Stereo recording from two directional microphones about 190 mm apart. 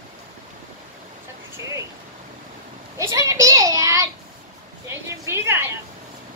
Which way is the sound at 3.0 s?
15° right (ahead or behind).